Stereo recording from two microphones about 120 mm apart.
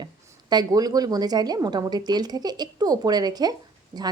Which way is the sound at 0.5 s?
30° right (ahead or behind).